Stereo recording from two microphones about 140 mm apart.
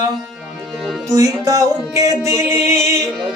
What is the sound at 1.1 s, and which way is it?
Music, 25° right (ahead or behind).